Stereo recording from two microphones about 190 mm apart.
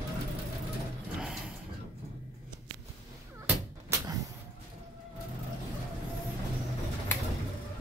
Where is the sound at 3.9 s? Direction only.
20° right (ahead or behind).